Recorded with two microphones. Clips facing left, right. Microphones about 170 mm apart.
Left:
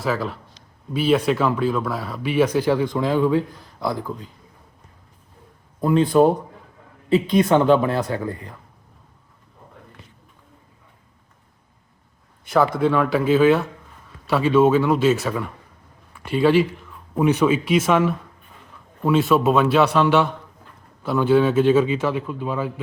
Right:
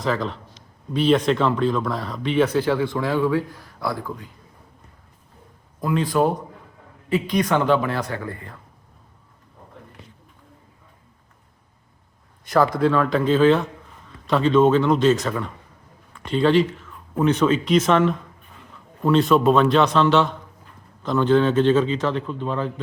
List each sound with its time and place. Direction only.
0.0 s speech: 5° left (ahead or behind)
5.8 s speech: 25° left (ahead or behind)
12.8 s speech: 10° left (ahead or behind)